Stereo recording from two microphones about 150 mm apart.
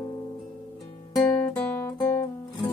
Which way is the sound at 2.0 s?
25° left (ahead or behind).